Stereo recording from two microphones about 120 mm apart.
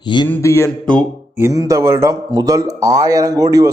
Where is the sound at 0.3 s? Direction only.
25° left (ahead or behind).